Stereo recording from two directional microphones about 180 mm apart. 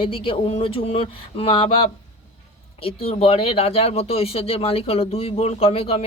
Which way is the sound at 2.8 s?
30° left (ahead or behind).